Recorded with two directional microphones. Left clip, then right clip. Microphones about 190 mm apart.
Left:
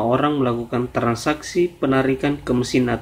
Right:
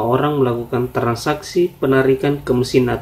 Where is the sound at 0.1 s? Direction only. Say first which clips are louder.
Right 3 dB; 30° left (ahead or behind).